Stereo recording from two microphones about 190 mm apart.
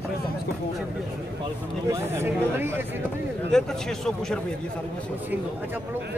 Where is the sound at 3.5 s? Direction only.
5° left (ahead or behind).